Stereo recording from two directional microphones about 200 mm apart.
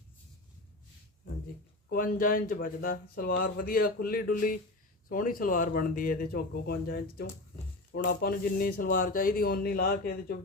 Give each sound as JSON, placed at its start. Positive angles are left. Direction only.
{"t": 1.9, "sound": "speech", "side_deg": 45}